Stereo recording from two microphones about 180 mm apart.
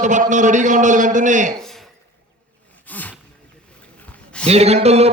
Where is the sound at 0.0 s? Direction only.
45° right (ahead or behind).